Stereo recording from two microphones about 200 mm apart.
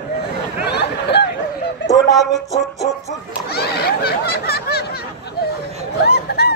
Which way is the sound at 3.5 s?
55° left (ahead or behind).